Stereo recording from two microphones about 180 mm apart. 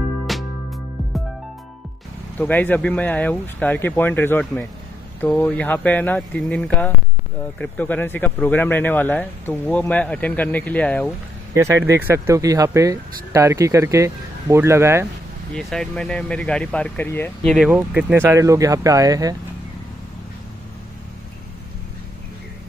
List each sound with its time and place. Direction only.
0.3 s music: centre (ahead or behind)
2.3 s speech: 10° left (ahead or behind)
11.5 s speech: 15° right (ahead or behind)
15.5 s speech: 5° left (ahead or behind)
17.6 s speech: 10° right (ahead or behind)